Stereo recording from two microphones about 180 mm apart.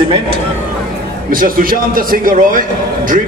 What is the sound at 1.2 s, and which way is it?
A man's voice, 50° right (ahead or behind).